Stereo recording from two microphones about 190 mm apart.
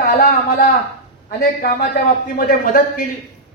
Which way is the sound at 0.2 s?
55° left (ahead or behind).